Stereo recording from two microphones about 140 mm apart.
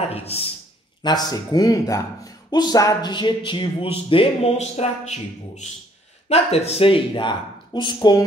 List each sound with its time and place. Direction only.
0.1 s speech: 45° left (ahead or behind)
1.0 s speech: 30° left (ahead or behind)